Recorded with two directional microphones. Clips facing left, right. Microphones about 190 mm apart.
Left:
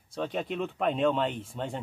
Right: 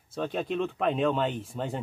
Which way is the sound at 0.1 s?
Centre (ahead or behind).